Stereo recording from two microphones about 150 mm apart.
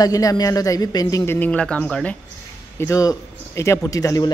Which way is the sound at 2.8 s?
20° left (ahead or behind).